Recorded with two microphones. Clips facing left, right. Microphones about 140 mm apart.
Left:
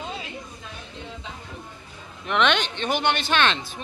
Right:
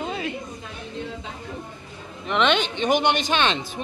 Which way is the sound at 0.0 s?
60° right (ahead or behind).